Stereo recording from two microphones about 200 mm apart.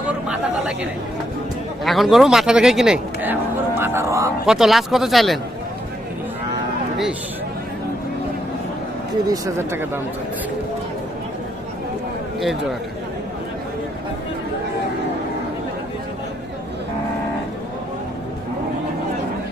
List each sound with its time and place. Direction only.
1.8 s a man's voice: centre (ahead or behind)
4.4 s a man's voice: centre (ahead or behind)
9.2 s speech: 15° right (ahead or behind)